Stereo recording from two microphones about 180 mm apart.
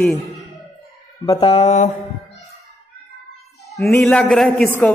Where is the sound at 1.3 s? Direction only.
35° left (ahead or behind).